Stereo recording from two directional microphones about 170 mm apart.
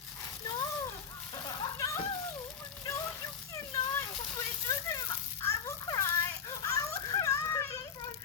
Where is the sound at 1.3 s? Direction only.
20° left (ahead or behind).